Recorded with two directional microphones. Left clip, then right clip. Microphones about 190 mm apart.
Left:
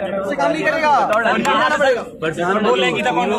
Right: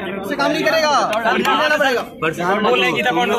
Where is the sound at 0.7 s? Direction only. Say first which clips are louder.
Left 1 dB; 40° right (ahead or behind).